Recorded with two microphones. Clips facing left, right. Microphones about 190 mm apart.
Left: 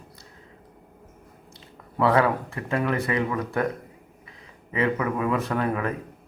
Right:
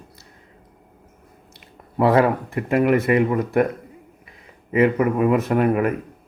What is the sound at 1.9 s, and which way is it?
Speech, 30° right (ahead or behind).